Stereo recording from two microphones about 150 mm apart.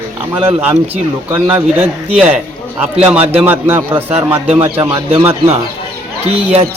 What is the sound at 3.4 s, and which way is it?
Speech, 15° right (ahead or behind).